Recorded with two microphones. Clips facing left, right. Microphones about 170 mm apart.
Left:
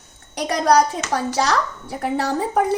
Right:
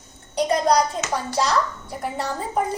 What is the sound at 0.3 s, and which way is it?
A child's voice, 80° left.